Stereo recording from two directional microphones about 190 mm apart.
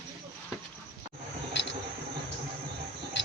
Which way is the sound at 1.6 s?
70° left (ahead or behind).